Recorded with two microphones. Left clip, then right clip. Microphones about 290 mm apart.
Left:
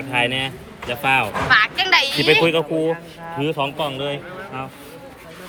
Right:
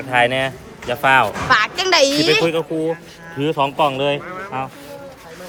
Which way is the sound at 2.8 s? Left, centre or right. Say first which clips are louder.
Left 1 dB; centre.